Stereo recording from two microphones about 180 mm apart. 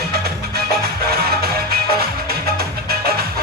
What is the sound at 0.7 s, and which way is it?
Music, 60° right (ahead or behind).